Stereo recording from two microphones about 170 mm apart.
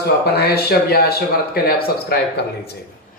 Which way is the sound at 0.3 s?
70° left (ahead or behind).